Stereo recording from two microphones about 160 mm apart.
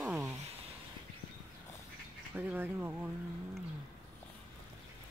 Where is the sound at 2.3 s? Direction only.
10° right (ahead or behind).